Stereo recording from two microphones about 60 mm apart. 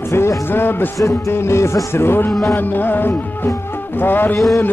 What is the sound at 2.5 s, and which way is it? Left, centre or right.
A man's voice, left.